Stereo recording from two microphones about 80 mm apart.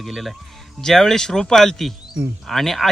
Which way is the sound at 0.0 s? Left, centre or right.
Centre.